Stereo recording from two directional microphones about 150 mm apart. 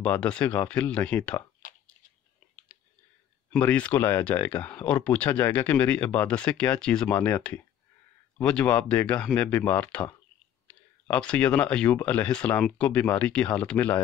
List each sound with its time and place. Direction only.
0.0 s speech: 10° left (ahead or behind)
1.6 s a sound: 60° left (ahead or behind)
3.5 s speech: 10° left (ahead or behind)